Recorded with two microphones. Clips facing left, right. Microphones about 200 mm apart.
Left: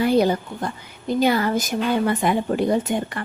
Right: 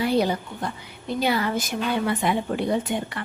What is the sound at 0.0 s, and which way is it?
A woman's voice, 45° left (ahead or behind).